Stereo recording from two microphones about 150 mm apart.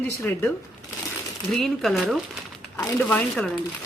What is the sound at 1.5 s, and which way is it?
Speech, centre (ahead or behind).